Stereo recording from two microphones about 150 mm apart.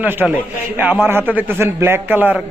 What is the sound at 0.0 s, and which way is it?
A man's voice, 10° right (ahead or behind).